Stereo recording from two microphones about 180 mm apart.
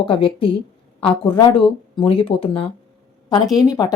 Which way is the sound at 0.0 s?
30° left (ahead or behind).